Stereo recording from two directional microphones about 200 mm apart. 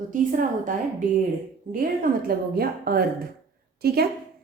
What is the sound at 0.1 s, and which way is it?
A woman's voice, 40° right (ahead or behind).